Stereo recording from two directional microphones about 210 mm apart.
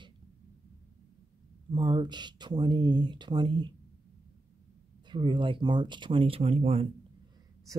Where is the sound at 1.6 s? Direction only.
20° right (ahead or behind).